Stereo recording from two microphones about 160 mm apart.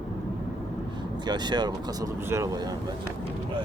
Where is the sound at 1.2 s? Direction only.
25° right (ahead or behind).